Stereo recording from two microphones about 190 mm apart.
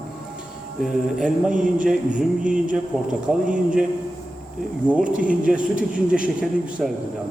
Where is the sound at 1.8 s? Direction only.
5° right (ahead or behind).